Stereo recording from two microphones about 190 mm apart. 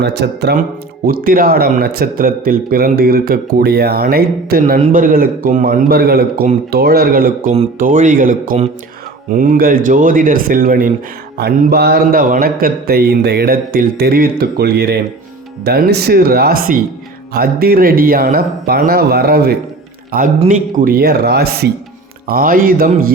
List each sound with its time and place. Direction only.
0.0 s a man's voice: 60° right (ahead or behind)
1.0 s speech: 50° right (ahead or behind)
7.5 s a man's voice: 40° right (ahead or behind)